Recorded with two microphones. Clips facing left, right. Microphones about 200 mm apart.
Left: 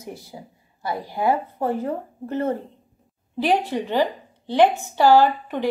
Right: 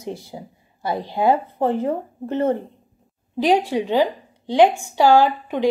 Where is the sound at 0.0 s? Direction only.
25° right (ahead or behind).